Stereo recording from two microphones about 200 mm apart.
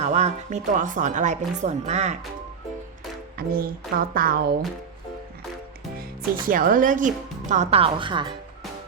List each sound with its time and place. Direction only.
0.0 s speech: 35° right (ahead or behind)
3.3 s speech: 45° right (ahead or behind)
6.4 s speech: 45° right (ahead or behind); by 8.3 s 25° right (ahead or behind)